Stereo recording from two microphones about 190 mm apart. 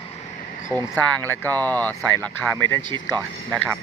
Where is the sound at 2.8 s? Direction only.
25° right (ahead or behind).